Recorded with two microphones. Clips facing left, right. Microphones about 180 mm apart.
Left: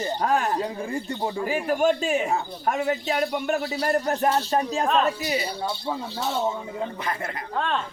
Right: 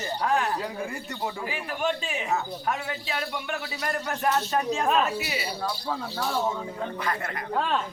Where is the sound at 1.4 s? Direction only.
45° left (ahead or behind).